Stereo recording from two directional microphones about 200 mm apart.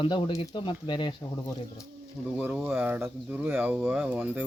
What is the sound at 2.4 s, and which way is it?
Speech, 10° right (ahead or behind).